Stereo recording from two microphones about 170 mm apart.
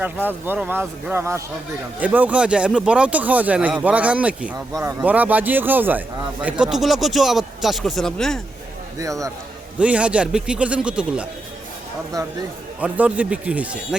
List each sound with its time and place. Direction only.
0.3 s speech: 10° right (ahead or behind)
4.5 s speech: 20° right (ahead or behind); by 8.4 s 5° left (ahead or behind)
9.0 s speech: 20° right (ahead or behind)
9.7 s speech: 5° right (ahead or behind)
12.8 s speech: 10° right (ahead or behind)